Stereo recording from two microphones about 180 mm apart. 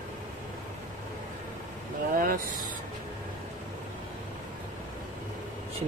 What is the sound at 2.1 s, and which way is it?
Speech, 50° right (ahead or behind).